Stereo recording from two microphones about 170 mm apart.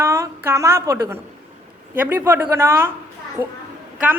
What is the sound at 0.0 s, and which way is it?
A woman's voice, 15° right (ahead or behind).